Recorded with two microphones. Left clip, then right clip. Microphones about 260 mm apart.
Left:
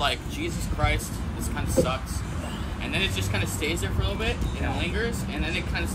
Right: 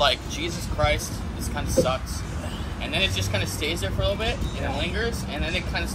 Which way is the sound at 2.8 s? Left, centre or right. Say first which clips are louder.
Right 3 dB; centre.